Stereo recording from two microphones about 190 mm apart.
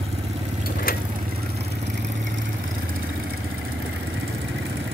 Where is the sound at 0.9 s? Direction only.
50° left (ahead or behind).